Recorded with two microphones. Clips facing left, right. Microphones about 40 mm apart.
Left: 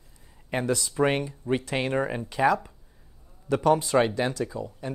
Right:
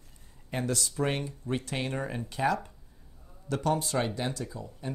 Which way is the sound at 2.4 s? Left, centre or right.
Centre.